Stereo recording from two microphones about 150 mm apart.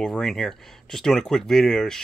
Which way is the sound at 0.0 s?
5° left (ahead or behind).